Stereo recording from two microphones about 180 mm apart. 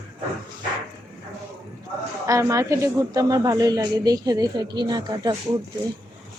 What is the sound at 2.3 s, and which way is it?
Speech, 15° right (ahead or behind).